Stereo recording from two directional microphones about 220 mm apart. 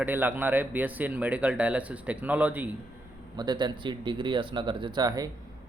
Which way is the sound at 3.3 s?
20° right (ahead or behind).